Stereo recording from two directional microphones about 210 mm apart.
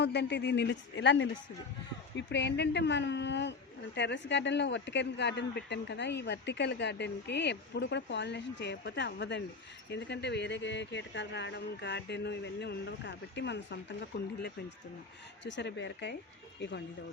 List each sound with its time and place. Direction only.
0.0 s speech: 55° left (ahead or behind)
15.4 s speech: 60° left (ahead or behind)